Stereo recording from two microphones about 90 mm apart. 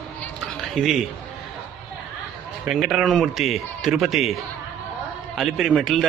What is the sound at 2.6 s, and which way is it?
A man's voice, 5° right (ahead or behind).